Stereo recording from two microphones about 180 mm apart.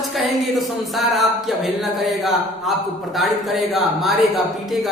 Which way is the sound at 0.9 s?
Centre (ahead or behind).